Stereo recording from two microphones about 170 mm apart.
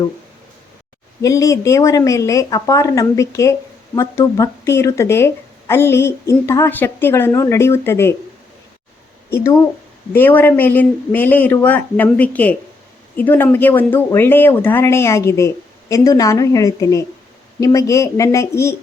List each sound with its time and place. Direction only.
1.2 s a woman's voice: 20° left (ahead or behind)
9.4 s speech: 15° left (ahead or behind)